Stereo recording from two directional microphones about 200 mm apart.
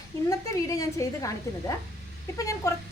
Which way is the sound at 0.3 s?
15° left (ahead or behind).